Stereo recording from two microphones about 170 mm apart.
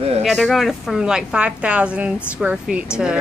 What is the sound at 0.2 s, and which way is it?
Speech, centre (ahead or behind).